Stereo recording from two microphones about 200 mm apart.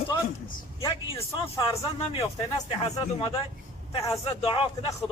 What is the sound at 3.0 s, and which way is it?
Speech, 25° left (ahead or behind).